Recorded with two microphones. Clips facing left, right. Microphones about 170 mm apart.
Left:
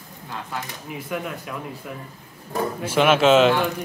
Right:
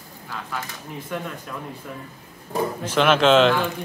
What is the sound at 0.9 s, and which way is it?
Speech, 10° left (ahead or behind).